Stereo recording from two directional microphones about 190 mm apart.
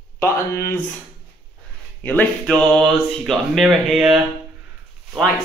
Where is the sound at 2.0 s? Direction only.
10° left (ahead or behind).